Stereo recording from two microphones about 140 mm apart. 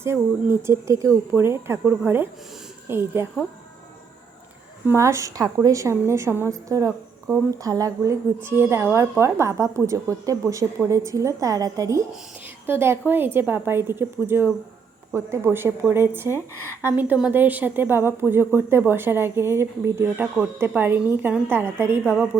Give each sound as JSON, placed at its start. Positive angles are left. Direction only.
{"t": 0.0, "sound": "a woman's voice", "side_deg": -20}
{"t": 4.9, "sound": "a woman's voice", "side_deg": -20}
{"t": 16.3, "sound": "a woman's voice", "side_deg": 15}
{"t": 16.8, "sound": "a woman's voice", "side_deg": -10}